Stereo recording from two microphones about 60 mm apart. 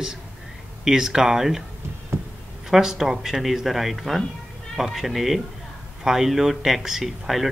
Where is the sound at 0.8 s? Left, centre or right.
Centre.